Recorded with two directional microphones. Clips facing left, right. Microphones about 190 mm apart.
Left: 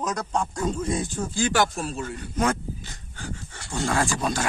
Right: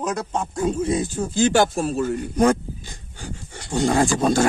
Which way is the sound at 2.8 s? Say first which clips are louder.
Right 1 dB; 15° right (ahead or behind).